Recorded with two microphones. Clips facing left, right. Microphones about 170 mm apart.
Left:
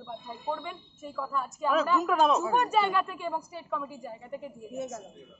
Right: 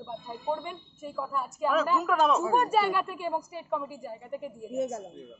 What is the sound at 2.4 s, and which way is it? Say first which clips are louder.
Speech: right 1 dB; 35° right (ahead or behind).